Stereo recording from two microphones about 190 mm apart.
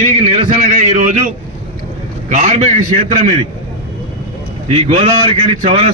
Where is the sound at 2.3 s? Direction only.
40° right (ahead or behind).